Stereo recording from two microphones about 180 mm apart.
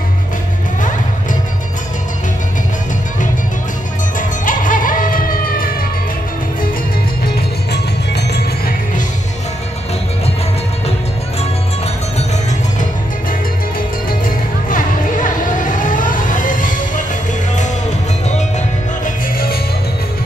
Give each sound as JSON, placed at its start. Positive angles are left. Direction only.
{"t": 4.2, "sound": "music", "side_deg": 45}
{"t": 7.3, "sound": "music", "side_deg": 65}
{"t": 13.7, "sound": "music", "side_deg": 50}
{"t": 19.0, "sound": "music", "side_deg": 55}